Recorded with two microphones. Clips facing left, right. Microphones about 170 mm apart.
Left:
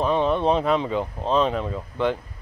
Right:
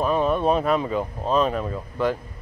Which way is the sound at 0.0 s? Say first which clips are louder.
Even; 10° right (ahead or behind).